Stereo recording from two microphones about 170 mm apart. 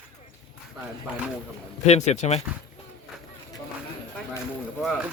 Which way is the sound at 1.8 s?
40° left (ahead or behind).